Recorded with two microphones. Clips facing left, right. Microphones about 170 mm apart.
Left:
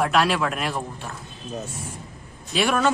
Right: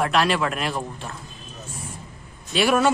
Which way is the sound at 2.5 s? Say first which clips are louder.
Right 2 dB; 5° right (ahead or behind).